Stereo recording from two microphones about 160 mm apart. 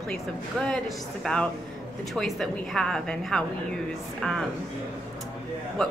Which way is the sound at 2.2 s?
5° left (ahead or behind).